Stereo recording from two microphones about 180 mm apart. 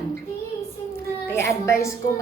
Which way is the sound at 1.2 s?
15° left (ahead or behind).